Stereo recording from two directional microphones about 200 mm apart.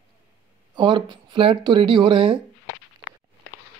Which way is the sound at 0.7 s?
25° right (ahead or behind).